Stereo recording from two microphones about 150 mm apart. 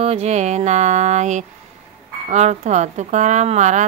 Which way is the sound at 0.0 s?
45° right (ahead or behind).